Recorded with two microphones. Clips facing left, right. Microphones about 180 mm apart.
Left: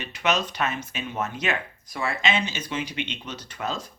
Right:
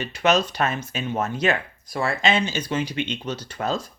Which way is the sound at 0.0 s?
35° right (ahead or behind).